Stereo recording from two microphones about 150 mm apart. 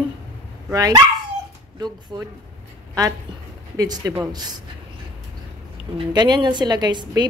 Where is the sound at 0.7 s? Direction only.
20° right (ahead or behind).